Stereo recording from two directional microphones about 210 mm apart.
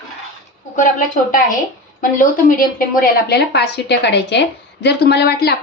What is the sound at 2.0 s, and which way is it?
A woman's voice, 40° left (ahead or behind).